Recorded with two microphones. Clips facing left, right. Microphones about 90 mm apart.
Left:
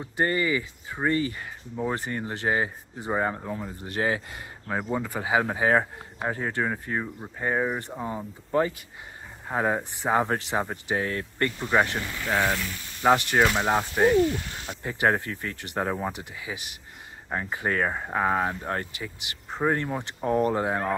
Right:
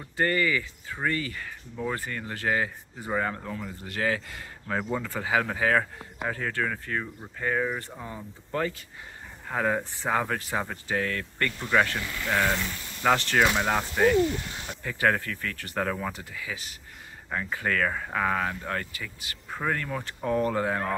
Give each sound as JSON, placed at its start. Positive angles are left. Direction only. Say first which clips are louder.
{"t": 0.2, "sound": "speech", "louder": "left 1 dB", "side_deg": 20}
{"t": 4.6, "sound": "speech", "louder": "left 1 dB", "side_deg": 10}
{"t": 13.0, "sound": "speech", "louder": "left 2 dB", "side_deg": 15}